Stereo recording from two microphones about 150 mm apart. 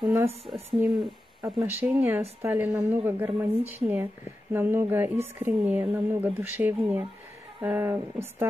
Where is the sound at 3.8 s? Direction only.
35° right (ahead or behind).